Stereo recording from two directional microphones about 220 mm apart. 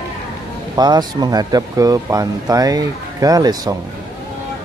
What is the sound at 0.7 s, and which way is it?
Speech, 20° right (ahead or behind).